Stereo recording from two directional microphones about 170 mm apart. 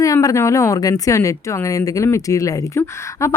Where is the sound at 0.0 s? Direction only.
20° left (ahead or behind).